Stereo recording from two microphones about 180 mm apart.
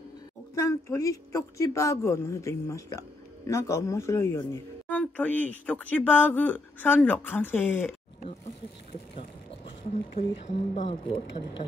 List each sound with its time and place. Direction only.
0.6 s speech: 15° left (ahead or behind)
10.1 s speech: 30° left (ahead or behind)